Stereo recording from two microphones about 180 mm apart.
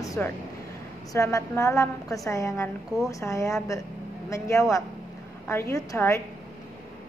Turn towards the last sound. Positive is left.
turn(degrees=15)  # may be behind; listen again after turning